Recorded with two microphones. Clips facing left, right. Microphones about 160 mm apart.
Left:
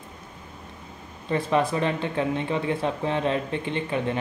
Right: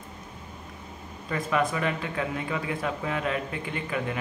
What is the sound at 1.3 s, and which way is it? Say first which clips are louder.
Speech: left 4 dB; 30° left (ahead or behind).